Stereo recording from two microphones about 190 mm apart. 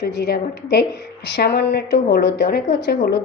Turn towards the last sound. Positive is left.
turn(degrees=60)  # may be behind; listen again after turning